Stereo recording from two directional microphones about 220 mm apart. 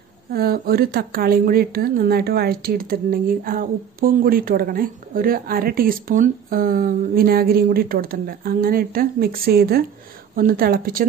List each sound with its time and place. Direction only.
0.3 s a woman's voice: 45° right (ahead or behind)